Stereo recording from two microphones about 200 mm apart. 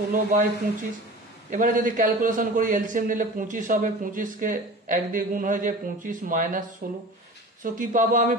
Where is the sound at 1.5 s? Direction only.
40° right (ahead or behind).